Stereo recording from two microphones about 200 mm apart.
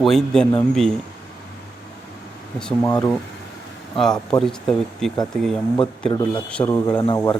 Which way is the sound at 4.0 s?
5° left (ahead or behind).